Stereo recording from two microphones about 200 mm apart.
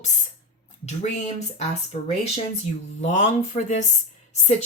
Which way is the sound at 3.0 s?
35° left (ahead or behind).